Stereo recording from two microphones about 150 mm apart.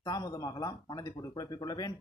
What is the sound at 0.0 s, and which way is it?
Speech, 25° left (ahead or behind).